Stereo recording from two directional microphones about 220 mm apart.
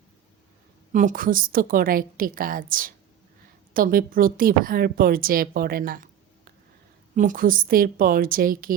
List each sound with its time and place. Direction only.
0.9 s a woman's voice: 35° right (ahead or behind)
7.2 s a woman's voice: 40° right (ahead or behind)